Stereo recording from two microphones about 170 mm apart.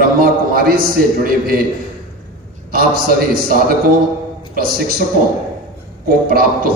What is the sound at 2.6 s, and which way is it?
A man's voice, 60° right (ahead or behind).